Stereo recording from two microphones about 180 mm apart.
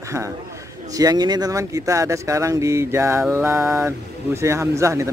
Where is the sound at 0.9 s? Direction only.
20° right (ahead or behind).